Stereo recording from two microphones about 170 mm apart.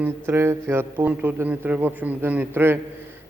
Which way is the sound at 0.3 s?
15° right (ahead or behind).